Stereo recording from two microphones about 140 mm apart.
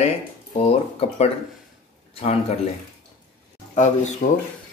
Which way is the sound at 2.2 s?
50° left (ahead or behind).